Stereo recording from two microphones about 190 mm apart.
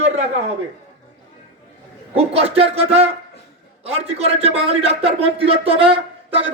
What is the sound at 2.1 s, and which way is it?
A man's voice, 30° right (ahead or behind).